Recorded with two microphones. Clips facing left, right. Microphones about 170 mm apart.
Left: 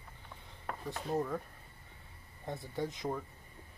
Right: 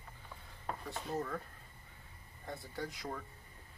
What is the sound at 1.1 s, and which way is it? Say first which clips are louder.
Speech: left 5 dB; 15° left (ahead or behind).